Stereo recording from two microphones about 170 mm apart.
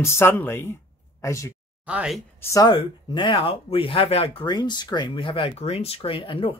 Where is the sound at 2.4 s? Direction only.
20° left (ahead or behind).